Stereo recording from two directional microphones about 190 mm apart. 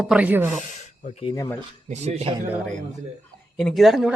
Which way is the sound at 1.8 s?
35° right (ahead or behind).